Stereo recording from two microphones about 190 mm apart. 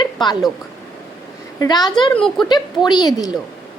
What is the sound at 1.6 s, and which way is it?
Speech, 20° left (ahead or behind).